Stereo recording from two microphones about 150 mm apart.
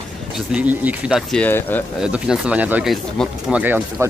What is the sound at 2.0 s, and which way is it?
Speech, 5° right (ahead or behind).